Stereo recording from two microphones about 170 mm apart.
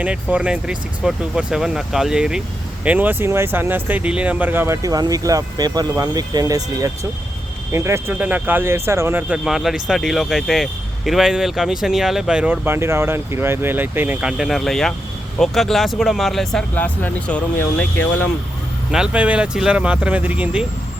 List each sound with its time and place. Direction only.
0.0 s speech: 5° right (ahead or behind)
9.4 s speech: centre (ahead or behind)
18.9 s speech: 5° right (ahead or behind)